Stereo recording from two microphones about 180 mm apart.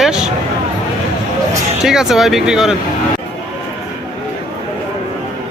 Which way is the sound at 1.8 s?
Centre (ahead or behind).